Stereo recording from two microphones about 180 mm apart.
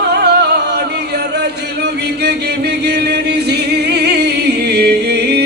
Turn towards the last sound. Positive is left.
turn(degrees=-65)  # may be behind; listen again after turning